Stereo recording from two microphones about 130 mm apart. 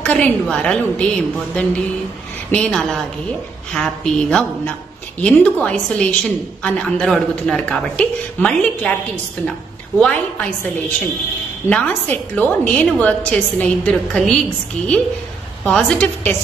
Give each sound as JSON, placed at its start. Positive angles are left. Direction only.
{"t": 0.0, "sound": "a woman's voice", "side_deg": 10}
{"t": 9.9, "sound": "a woman's voice", "side_deg": 5}
{"t": 11.7, "sound": "a woman's voice", "side_deg": 10}
{"t": 15.6, "sound": "speech", "side_deg": 5}